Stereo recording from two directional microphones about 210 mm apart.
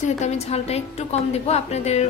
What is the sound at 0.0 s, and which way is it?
A woman's voice, 30° left (ahead or behind).